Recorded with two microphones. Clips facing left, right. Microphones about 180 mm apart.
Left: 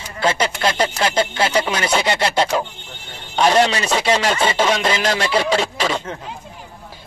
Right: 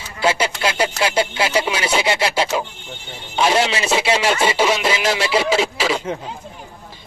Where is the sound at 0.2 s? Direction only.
10° right (ahead or behind).